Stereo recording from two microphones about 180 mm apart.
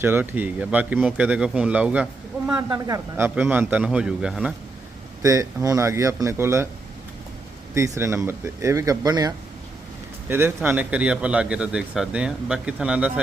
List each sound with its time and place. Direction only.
0.0 s a man's voice: 10° right (ahead or behind)
2.6 s a woman's voice: 20° right (ahead or behind); by 4.5 s 5° right (ahead or behind)
5.2 s a man's voice: 20° right (ahead or behind)
7.7 s a man's voice: 15° right (ahead or behind)